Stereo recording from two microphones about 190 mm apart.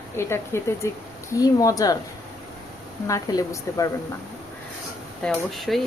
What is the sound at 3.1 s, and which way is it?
Speech, 15° left (ahead or behind).